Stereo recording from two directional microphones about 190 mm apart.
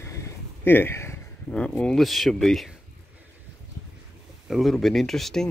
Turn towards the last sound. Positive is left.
turn(degrees=0)  # may be behind; listen again after turning